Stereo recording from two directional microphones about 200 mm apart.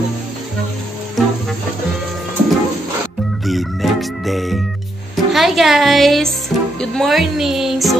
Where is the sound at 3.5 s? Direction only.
Centre (ahead or behind).